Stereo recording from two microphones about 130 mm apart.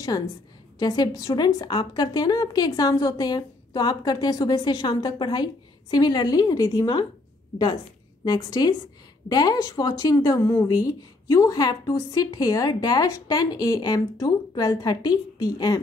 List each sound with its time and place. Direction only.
0.7 s a woman's voice: 30° left (ahead or behind)
8.2 s a woman's voice: 30° left (ahead or behind)